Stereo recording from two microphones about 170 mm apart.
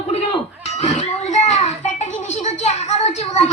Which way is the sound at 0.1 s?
35° left (ahead or behind).